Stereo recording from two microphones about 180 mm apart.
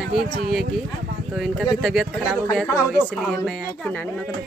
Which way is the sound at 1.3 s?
Centre (ahead or behind).